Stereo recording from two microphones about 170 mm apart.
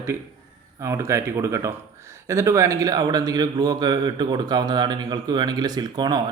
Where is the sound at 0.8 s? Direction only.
15° right (ahead or behind).